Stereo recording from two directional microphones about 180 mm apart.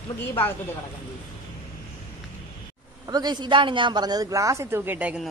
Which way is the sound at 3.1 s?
20° right (ahead or behind).